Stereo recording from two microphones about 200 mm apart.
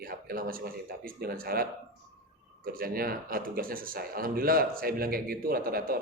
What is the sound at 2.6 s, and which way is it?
Speech, 45° right (ahead or behind).